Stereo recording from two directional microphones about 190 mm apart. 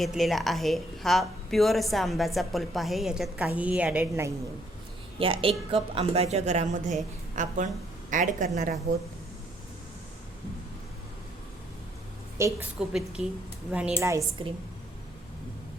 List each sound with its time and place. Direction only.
0.0 s a woman's voice: centre (ahead or behind)
5.2 s a woman's voice: 30° right (ahead or behind)
12.4 s a woman's voice: 15° right (ahead or behind)
12.8 s a woman's voice: centre (ahead or behind)
14.4 s a woman's voice: 25° right (ahead or behind)